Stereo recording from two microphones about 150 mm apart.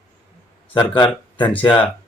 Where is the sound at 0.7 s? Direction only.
30° left (ahead or behind).